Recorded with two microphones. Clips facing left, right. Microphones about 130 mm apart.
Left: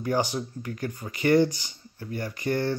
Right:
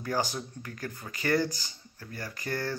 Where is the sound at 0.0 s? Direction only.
15° left (ahead or behind).